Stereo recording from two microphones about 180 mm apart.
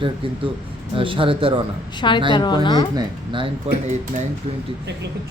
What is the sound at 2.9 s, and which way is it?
Speech, 25° right (ahead or behind).